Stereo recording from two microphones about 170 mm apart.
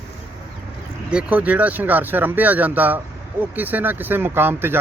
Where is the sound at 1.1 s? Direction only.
10° right (ahead or behind).